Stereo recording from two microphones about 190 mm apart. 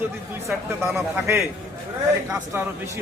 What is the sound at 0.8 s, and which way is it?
Speech, 10° right (ahead or behind).